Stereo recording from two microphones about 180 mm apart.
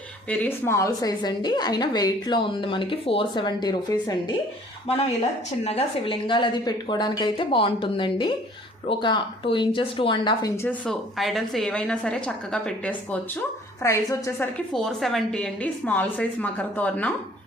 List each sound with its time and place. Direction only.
0.3 s a woman's voice: 10° left (ahead or behind)
5.6 s a woman's voice: 30° left (ahead or behind)
10.6 s a woman's voice: 5° left (ahead or behind)
14.7 s a woman's voice: centre (ahead or behind)